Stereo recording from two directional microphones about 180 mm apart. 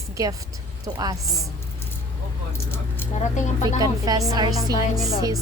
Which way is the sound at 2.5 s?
10° left (ahead or behind).